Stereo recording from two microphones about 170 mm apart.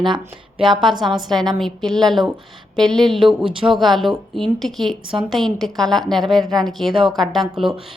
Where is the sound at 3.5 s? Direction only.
30° right (ahead or behind).